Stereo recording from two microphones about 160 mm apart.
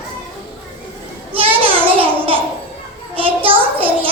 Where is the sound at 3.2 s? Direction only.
35° right (ahead or behind).